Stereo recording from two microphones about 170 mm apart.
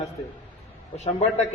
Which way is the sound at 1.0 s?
40° left (ahead or behind).